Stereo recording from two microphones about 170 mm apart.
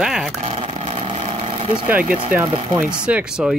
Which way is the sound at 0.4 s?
35° right (ahead or behind).